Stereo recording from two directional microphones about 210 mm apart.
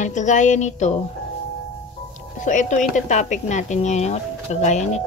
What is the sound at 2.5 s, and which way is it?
A woman's voice, 35° left (ahead or behind).